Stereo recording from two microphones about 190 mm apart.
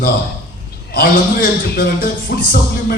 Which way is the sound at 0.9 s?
55° left (ahead or behind).